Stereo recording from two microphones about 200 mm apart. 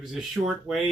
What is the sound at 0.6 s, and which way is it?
Speech, centre (ahead or behind).